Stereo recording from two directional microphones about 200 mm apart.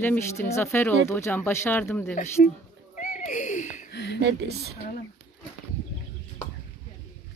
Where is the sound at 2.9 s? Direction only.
40° left (ahead or behind).